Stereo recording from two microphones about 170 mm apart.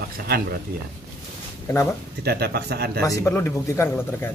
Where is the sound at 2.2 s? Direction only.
70° right (ahead or behind).